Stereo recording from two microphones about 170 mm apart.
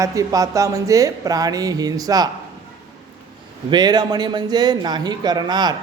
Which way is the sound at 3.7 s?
25° right (ahead or behind).